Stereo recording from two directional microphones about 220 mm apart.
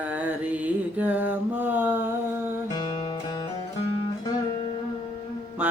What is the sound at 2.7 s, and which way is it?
Music, 20° left (ahead or behind).